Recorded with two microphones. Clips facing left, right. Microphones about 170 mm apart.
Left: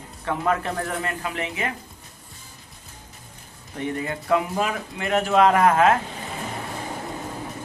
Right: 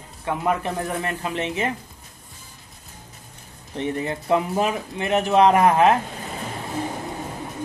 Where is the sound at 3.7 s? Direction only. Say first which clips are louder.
Right 2 dB; 25° right (ahead or behind).